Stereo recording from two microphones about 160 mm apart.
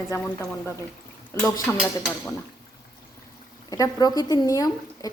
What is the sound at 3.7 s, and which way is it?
A woman's voice, 25° left (ahead or behind).